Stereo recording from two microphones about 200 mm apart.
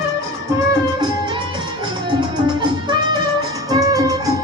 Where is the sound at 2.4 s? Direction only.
20° right (ahead or behind).